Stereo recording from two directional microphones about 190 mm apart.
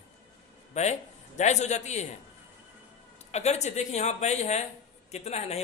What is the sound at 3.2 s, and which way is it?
A man's voice, 35° left (ahead or behind).